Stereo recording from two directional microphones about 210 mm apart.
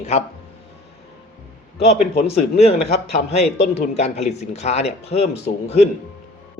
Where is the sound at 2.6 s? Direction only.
30° left (ahead or behind).